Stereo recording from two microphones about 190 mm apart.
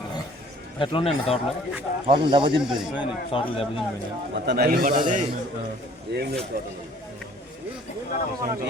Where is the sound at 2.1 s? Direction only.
25° right (ahead or behind).